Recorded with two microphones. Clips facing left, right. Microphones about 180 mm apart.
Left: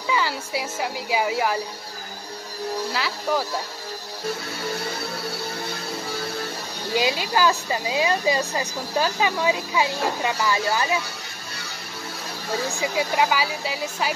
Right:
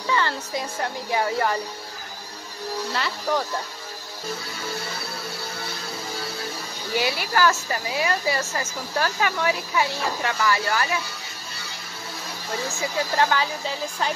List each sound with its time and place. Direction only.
0.1 s speech: 10° left (ahead or behind)
2.9 s speech: centre (ahead or behind)
6.9 s speech: 15° left (ahead or behind)
12.6 s speech: 15° left (ahead or behind)